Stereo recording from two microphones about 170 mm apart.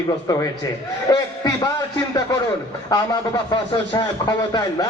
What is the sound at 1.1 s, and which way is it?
Speech, 20° left (ahead or behind).